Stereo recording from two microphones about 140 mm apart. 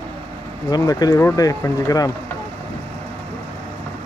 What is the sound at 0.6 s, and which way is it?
Speech, 25° left (ahead or behind).